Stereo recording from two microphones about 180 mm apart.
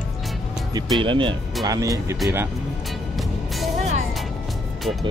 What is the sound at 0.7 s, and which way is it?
Speech, 25° right (ahead or behind).